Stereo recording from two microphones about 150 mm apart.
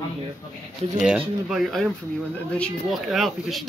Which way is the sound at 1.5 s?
Centre (ahead or behind).